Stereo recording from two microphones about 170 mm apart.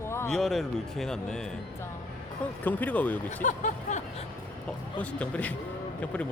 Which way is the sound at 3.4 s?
50° left (ahead or behind).